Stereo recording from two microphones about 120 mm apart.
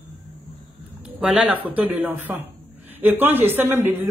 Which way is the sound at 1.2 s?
10° right (ahead or behind).